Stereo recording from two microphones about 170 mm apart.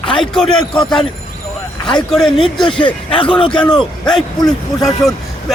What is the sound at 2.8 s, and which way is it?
Speech, 30° left (ahead or behind).